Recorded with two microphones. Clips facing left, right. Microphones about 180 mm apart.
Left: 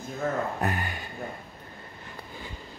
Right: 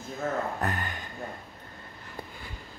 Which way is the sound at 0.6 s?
10° left (ahead or behind).